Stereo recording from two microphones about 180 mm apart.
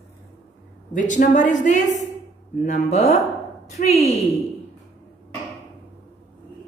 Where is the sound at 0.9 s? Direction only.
45° left (ahead or behind).